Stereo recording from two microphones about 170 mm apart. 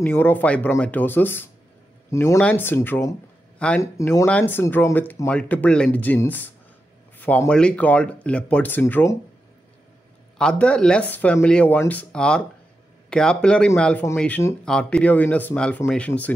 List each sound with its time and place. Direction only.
0.0 s speech: 10° left (ahead or behind)
3.8 s speech: 15° left (ahead or behind)
10.3 s speech: 5° left (ahead or behind)